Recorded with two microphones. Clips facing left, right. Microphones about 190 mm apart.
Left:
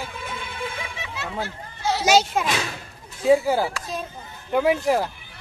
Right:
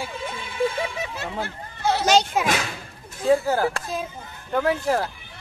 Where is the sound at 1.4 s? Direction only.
55° right (ahead or behind).